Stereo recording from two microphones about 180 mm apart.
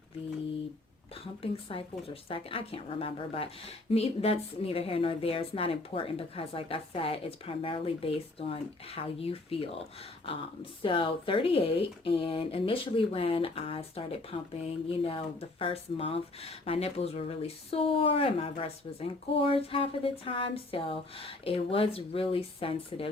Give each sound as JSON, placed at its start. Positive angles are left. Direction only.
{"t": 1.2, "sound": "speech", "side_deg": 30}
{"t": 10.8, "sound": "speech", "side_deg": 30}